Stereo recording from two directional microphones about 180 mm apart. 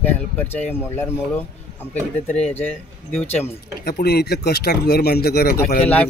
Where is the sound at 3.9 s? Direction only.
60° left (ahead or behind).